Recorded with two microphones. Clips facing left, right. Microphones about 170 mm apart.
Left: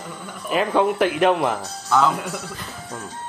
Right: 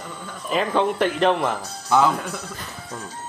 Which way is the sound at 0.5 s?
5° left (ahead or behind).